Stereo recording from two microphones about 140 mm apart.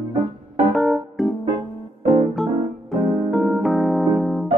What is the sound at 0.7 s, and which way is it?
Keyboard, centre (ahead or behind).